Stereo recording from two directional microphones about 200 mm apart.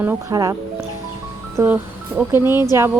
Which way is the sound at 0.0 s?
10° right (ahead or behind).